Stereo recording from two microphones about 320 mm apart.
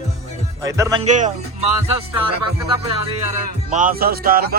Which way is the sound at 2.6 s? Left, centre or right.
Centre.